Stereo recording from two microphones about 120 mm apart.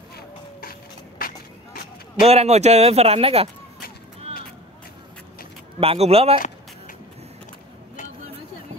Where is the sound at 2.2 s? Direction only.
60° right (ahead or behind).